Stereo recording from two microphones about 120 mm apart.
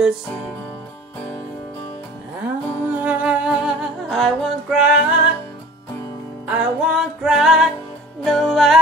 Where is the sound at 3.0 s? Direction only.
10° right (ahead or behind).